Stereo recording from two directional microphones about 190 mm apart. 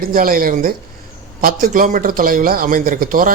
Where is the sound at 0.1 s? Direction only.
50° right (ahead or behind).